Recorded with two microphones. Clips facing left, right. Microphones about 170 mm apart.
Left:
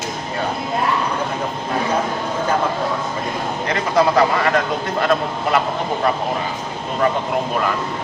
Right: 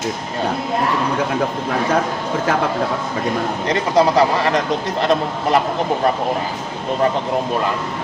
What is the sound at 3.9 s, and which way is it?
Speech, 30° right (ahead or behind).